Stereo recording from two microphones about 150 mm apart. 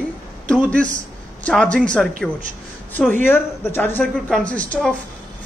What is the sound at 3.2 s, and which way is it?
Speech, 15° left (ahead or behind).